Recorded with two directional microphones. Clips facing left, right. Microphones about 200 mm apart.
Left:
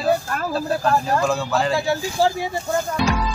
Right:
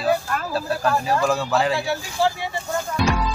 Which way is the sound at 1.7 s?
45° left (ahead or behind).